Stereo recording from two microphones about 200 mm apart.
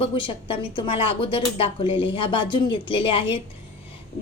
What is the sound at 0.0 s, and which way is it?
A woman's voice, 25° left (ahead or behind).